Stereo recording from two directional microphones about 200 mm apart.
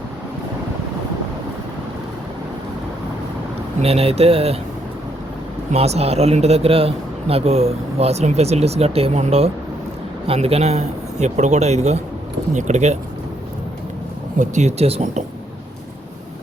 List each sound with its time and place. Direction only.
3.8 s a man's voice: 30° right (ahead or behind)
5.7 s a man's voice: 30° right (ahead or behind)
14.3 s a man's voice: 35° right (ahead or behind)